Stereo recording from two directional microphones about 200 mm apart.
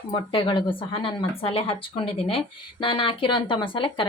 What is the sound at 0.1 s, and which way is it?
Speech, 25° left (ahead or behind).